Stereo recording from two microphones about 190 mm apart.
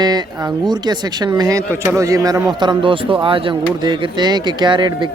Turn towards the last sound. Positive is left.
turn(degrees=-25)  # may be behind; listen again after turning